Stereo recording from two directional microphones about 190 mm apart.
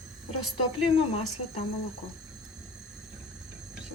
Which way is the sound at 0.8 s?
30° left (ahead or behind).